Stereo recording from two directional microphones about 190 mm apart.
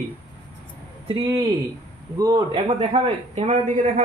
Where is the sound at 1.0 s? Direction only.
25° right (ahead or behind).